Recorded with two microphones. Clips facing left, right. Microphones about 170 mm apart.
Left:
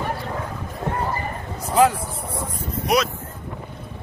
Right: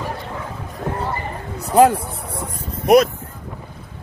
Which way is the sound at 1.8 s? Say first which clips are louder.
Right 4 dB; 50° right (ahead or behind).